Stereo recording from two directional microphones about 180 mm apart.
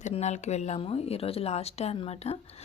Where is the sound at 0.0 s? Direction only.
40° left (ahead or behind).